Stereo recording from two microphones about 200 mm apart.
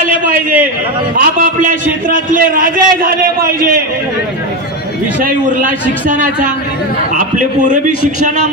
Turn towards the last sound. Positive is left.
turn(degrees=-40)  # may be behind; listen again after turning